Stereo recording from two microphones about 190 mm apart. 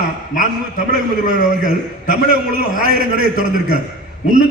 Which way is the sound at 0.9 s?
50° right (ahead or behind).